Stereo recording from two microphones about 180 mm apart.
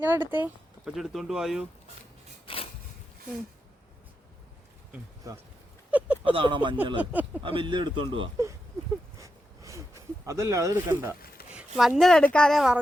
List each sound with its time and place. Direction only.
0.0 s a woman's voice: 10° right (ahead or behind)
2.5 s a sound: 30° left (ahead or behind)
4.9 s speech: 20° right (ahead or behind)
5.9 s a sound: 10° right (ahead or behind)
6.3 s a man's voice: 25° right (ahead or behind)
7.0 s speech: 10° right (ahead or behind)
7.4 s a man's voice: 30° right (ahead or behind)
9.1 s a sound: 15° right (ahead or behind)
11.5 s a woman's voice: centre (ahead or behind)